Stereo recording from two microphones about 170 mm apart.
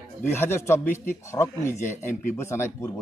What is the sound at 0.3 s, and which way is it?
A man's voice, 15° left (ahead or behind).